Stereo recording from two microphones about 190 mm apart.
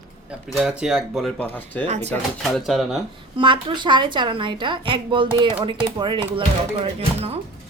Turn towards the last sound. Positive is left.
turn(degrees=-35)  # may be behind; listen again after turning